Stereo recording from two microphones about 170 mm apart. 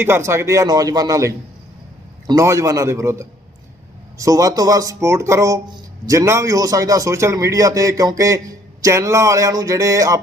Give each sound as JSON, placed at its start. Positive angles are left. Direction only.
{"t": 0.0, "sound": "a man's voice", "side_deg": -15}